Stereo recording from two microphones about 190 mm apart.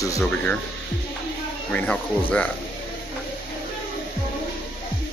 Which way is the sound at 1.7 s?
10° left (ahead or behind).